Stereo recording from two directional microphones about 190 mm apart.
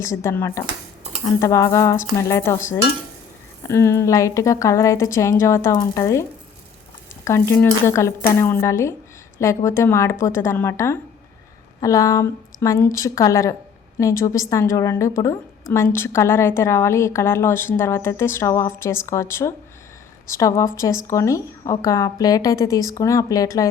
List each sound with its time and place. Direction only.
0.0 s a woman's voice: 15° left (ahead or behind)
7.3 s a woman's voice: 15° left (ahead or behind)